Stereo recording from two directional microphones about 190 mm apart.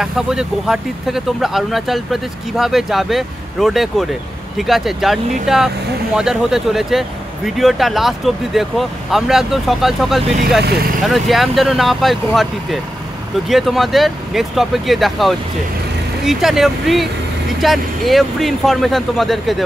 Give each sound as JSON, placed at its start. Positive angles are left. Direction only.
{"t": 0.0, "sound": "speech", "side_deg": -5}